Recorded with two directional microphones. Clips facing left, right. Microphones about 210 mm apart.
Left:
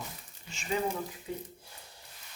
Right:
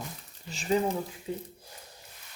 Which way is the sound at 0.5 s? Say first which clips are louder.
Right 7 dB; 35° right (ahead or behind).